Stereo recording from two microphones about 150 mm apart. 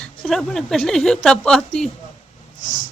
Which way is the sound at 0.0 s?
Centre (ahead or behind).